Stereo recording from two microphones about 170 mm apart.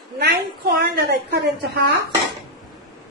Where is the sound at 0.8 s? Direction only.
65° right (ahead or behind); by 2.0 s 85° right.